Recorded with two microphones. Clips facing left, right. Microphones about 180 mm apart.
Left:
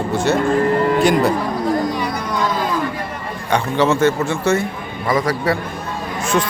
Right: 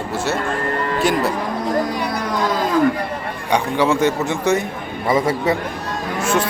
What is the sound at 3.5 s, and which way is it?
A man's voice, 15° right (ahead or behind).